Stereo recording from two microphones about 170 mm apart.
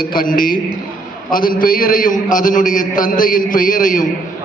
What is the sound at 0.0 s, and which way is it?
A man's voice, 55° left (ahead or behind).